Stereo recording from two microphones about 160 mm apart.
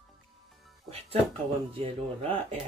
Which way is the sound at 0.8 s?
40° right (ahead or behind).